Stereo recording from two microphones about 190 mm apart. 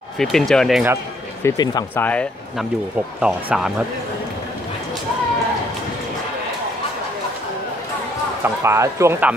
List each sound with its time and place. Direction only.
0.2 s speech: centre (ahead or behind)
1.4 s speech: 20° left (ahead or behind)
3.2 s speech: 5° right (ahead or behind)
8.6 s speech: 15° right (ahead or behind)